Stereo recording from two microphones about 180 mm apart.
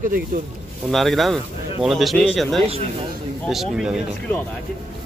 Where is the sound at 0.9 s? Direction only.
Centre (ahead or behind).